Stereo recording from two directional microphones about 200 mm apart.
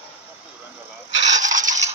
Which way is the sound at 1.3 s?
40° right (ahead or behind).